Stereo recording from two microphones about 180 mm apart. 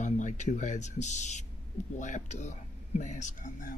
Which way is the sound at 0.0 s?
40° left (ahead or behind).